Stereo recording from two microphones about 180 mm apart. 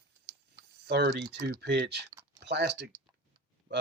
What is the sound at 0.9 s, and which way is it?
Speech, 65° right (ahead or behind).